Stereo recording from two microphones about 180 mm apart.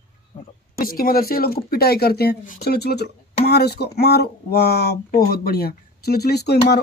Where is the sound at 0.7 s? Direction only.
55° left (ahead or behind).